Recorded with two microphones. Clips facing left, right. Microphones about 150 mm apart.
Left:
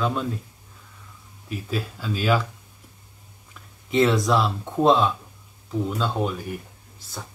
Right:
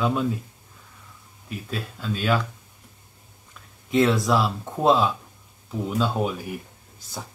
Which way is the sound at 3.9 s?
Centre (ahead or behind).